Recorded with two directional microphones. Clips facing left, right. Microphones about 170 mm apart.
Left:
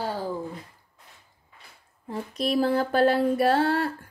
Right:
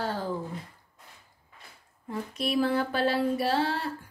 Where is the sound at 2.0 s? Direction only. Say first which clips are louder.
Left 3 dB; 35° left (ahead or behind); by 4.1 s 50° left (ahead or behind).